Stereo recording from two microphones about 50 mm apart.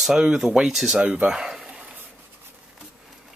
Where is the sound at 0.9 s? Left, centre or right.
Right.